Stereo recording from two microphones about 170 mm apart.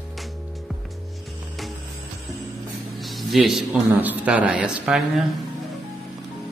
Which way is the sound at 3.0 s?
Centre (ahead or behind).